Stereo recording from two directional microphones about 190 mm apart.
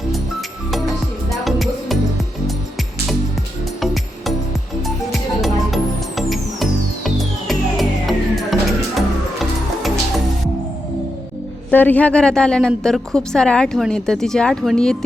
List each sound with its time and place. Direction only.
1.3 s music: centre (ahead or behind)
3.8 s music: centre (ahead or behind)
5.4 s music: centre (ahead or behind)
11.7 s a woman's voice: 10° left (ahead or behind)